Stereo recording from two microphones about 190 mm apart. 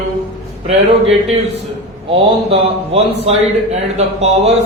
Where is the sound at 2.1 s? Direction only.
30° right (ahead or behind).